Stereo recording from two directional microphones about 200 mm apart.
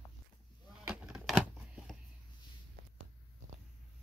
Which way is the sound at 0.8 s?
Centre (ahead or behind).